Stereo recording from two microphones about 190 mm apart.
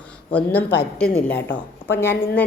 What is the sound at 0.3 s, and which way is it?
A woman's voice, 10° left (ahead or behind).